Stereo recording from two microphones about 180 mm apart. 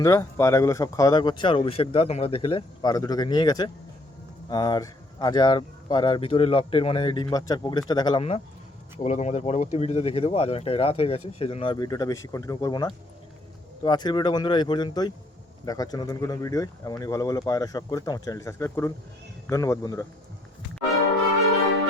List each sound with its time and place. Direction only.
0.0 s speech: 15° left (ahead or behind)
9.0 s speech: 40° left (ahead or behind); by 20.1 s 15° left (ahead or behind)